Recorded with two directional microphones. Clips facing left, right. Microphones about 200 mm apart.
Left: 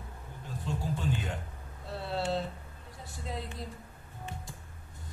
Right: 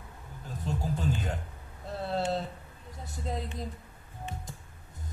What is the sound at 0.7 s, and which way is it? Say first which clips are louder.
Music: right 2 dB; 40° right (ahead or behind).